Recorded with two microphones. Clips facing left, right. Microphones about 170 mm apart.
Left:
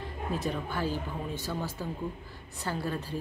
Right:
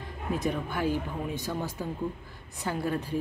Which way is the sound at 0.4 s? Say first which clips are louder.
Right 3 dB; 15° right (ahead or behind).